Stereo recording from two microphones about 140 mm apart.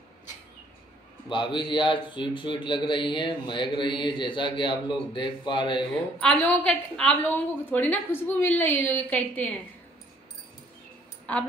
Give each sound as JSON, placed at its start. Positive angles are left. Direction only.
{"t": 1.3, "sound": "a man's voice", "side_deg": 35}
{"t": 6.1, "sound": "a woman's voice", "side_deg": 5}
{"t": 11.3, "sound": "a woman's voice", "side_deg": 10}